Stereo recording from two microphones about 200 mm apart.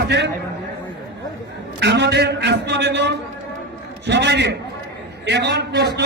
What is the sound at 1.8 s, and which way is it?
A man's voice, 60° right (ahead or behind).